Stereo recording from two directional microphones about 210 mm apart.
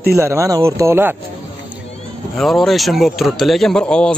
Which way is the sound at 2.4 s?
Centre (ahead or behind).